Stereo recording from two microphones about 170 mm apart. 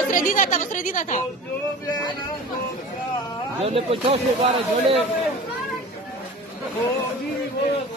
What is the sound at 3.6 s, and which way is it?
Speech, 35° right (ahead or behind).